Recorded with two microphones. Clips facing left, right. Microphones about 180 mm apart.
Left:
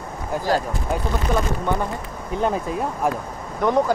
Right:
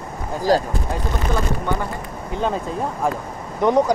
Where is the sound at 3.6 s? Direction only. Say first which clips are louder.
Right 3 dB; 20° right (ahead or behind).